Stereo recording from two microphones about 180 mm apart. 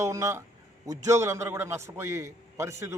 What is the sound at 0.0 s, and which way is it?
A man's voice, 15° right (ahead or behind).